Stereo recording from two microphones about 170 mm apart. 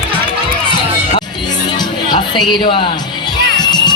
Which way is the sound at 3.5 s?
25° left (ahead or behind).